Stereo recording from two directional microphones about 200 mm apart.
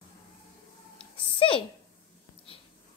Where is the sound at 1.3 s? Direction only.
25° left (ahead or behind).